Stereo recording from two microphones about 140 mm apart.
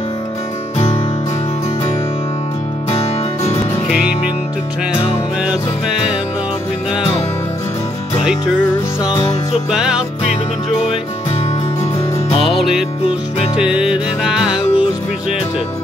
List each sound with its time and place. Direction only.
2.9 s music: 45° left (ahead or behind)
9.1 s music: 35° left (ahead or behind)
9.7 s music: 5° right (ahead or behind)
12.3 s music: 40° left (ahead or behind)
12.5 s music: centre (ahead or behind)